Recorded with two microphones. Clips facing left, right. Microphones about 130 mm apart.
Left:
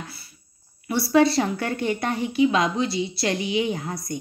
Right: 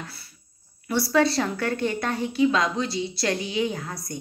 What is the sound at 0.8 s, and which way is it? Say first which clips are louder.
A woman's voice: left 3 dB; 10° left (ahead or behind).